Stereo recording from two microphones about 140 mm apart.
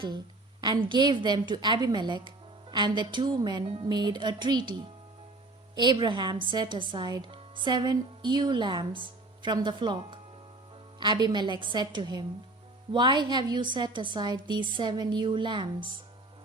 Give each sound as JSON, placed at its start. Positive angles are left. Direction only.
{"t": 0.9, "sound": "a woman's voice", "side_deg": -35}